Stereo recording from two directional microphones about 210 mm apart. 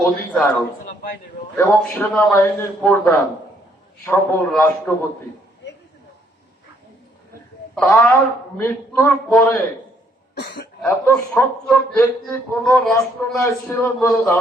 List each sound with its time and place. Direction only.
0.0 s a man's voice: 5° left (ahead or behind)
1.5 s a man's voice: 10° left (ahead or behind)
7.8 s a man's voice: 10° left (ahead or behind)
10.3 s speech: 50° left (ahead or behind)
10.8 s a man's voice: 10° left (ahead or behind)